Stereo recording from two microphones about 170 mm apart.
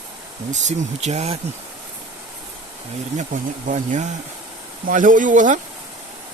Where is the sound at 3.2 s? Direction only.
45° right (ahead or behind).